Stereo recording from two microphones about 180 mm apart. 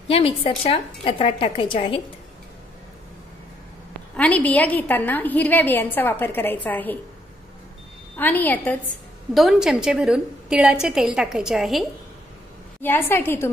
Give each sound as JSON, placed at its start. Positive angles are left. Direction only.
{"t": 0.1, "sound": "a woman's voice", "side_deg": 30}
{"t": 4.2, "sound": "a woman's voice", "side_deg": 5}
{"t": 8.2, "sound": "a woman's voice", "side_deg": 10}
{"t": 9.3, "sound": "a woman's voice", "side_deg": 0}
{"t": 12.8, "sound": "a woman's voice", "side_deg": 10}